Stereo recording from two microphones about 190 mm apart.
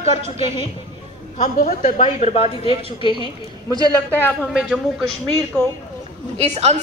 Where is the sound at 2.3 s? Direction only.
30° left (ahead or behind).